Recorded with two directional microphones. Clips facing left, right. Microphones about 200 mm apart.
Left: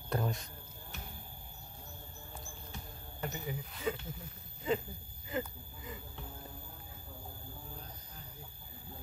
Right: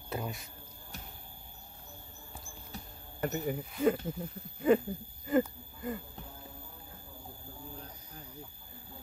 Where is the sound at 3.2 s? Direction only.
55° right (ahead or behind).